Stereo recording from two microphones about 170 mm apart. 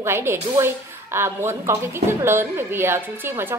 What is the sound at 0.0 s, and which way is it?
A woman's voice, 15° right (ahead or behind).